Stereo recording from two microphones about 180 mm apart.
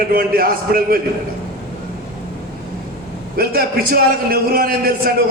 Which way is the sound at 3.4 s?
55° right (ahead or behind).